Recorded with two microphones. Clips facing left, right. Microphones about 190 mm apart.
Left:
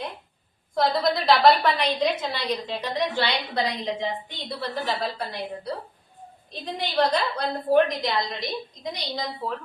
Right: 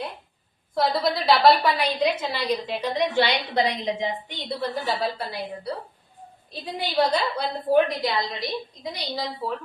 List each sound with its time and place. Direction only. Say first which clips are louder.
0.8 s a woman's voice: even; centre (ahead or behind)
3.2 s a woman's voice: right 4 dB; 20° right (ahead or behind); by 9.6 s 5° right (ahead or behind)